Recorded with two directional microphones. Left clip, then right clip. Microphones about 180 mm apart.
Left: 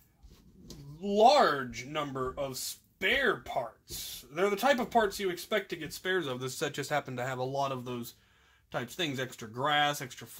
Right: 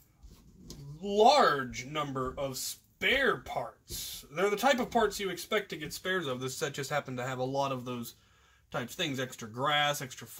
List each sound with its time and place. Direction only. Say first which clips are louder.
1.0 s speech: even; 45° left (ahead or behind)